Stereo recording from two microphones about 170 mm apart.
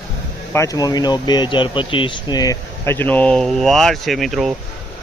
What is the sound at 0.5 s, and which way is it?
Speech, 20° left (ahead or behind).